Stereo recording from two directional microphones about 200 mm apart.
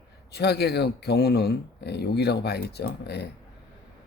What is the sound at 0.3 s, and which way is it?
Speech, 55° left (ahead or behind).